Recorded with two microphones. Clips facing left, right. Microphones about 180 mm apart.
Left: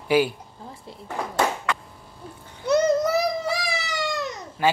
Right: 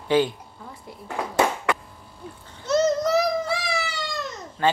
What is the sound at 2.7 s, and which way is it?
Child singing, 10° left (ahead or behind).